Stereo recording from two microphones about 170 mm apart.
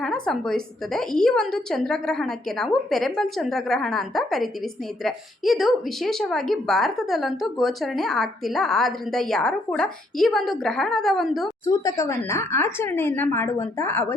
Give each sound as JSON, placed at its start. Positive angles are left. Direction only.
{"t": 0.0, "sound": "speech", "side_deg": 5}
{"t": 11.6, "sound": "speech", "side_deg": 20}